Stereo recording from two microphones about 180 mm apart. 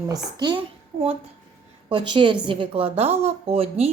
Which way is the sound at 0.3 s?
25° right (ahead or behind).